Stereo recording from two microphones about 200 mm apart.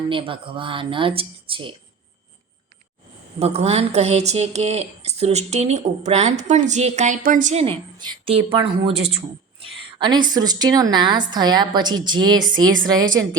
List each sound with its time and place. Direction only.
0.1 s speech: 25° right (ahead or behind)
3.3 s a woman's voice: 30° right (ahead or behind)